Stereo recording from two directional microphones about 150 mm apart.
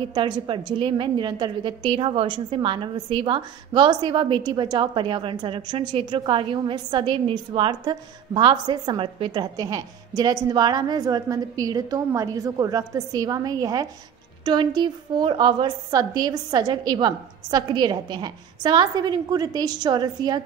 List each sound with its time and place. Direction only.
0.1 s a woman's voice: 30° right (ahead or behind)